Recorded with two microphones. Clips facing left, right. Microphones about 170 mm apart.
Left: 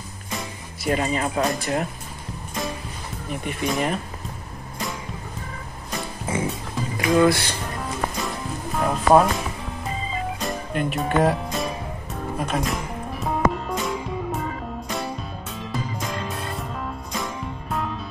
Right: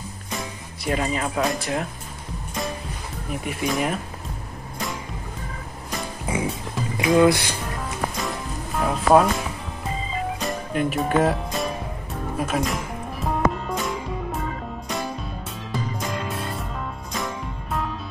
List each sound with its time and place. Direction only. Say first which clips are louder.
0.4 s speech: even; centre (ahead or behind)
3.3 s speech: even; centre (ahead or behind)
6.2 s music: even; 15° right (ahead or behind)
7.0 s speech: right 1 dB; 20° right (ahead or behind)
8.7 s speech: even; centre (ahead or behind)
10.4 s speech: right 2 dB; centre (ahead or behind)
13.2 s music: even; centre (ahead or behind)
17.1 s music: right 2 dB; centre (ahead or behind)